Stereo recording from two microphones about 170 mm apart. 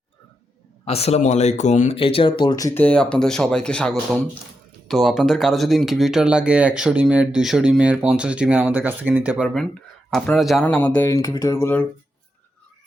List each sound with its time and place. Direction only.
0.9 s speech: 35° left (ahead or behind)
2.4 s speech: 25° left (ahead or behind)